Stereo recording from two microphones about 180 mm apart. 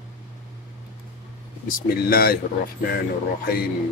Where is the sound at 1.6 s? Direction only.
50° left (ahead or behind).